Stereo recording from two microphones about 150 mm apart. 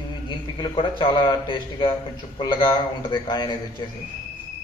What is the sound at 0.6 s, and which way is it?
A man's voice, 35° left (ahead or behind).